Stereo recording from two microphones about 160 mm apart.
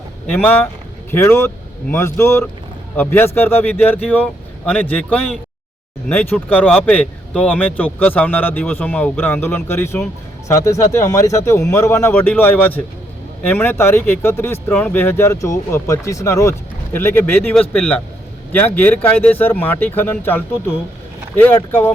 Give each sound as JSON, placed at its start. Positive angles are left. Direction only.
{"t": 0.3, "sound": "speech", "side_deg": 10}